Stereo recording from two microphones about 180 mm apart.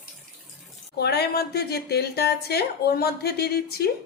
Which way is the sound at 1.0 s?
65° left (ahead or behind).